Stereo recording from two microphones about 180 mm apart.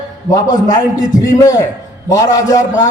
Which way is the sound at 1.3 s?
20° left (ahead or behind).